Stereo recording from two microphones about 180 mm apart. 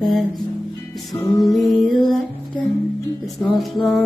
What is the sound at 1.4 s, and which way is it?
Music, centre (ahead or behind).